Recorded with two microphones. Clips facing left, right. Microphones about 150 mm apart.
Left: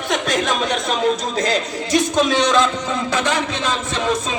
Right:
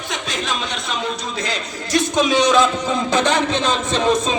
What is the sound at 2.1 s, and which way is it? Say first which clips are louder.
Speech: right 3 dB; centre (ahead or behind).